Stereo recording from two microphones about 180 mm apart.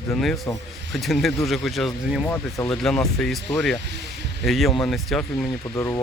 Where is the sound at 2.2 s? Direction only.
10° left (ahead or behind).